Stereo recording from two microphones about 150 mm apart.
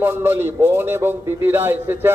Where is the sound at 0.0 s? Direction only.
15° right (ahead or behind).